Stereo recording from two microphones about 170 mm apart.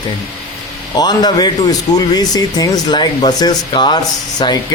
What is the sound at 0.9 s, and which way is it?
Speech, 25° left (ahead or behind).